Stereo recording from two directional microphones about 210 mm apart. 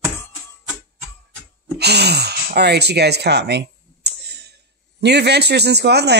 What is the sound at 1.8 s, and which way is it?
Speech, 50° right (ahead or behind).